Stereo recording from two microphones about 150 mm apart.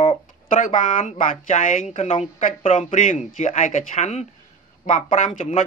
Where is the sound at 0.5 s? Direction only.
60° left (ahead or behind).